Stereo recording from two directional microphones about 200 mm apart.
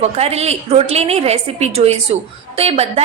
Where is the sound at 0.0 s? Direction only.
30° right (ahead or behind).